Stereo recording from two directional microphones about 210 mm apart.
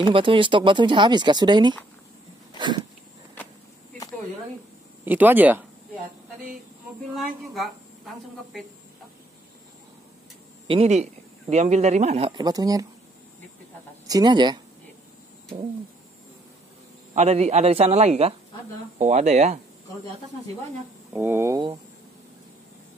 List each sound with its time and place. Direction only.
0.0 s speech: 25° right (ahead or behind)
5.0 s a sound: 10° right (ahead or behind)
7.2 s speech: centre (ahead or behind)
10.7 s speech: 30° right (ahead or behind)
14.0 s speech: 20° right (ahead or behind)
17.1 s speech: 30° right (ahead or behind)
21.1 s a sound: 10° right (ahead or behind)